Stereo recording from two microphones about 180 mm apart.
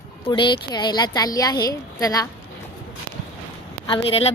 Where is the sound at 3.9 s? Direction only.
30° left (ahead or behind).